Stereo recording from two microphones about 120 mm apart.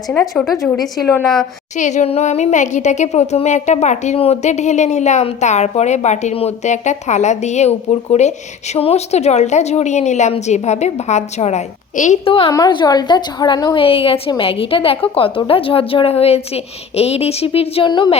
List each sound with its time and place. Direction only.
0.1 s speech: 10° left (ahead or behind)
0.4 s a woman's voice: centre (ahead or behind)
1.7 s speech: 80° left
12.2 s a woman's voice: 50° left (ahead or behind)
12.5 s a woman's voice: 35° left (ahead or behind)
13.8 s a woman's voice: 50° left (ahead or behind)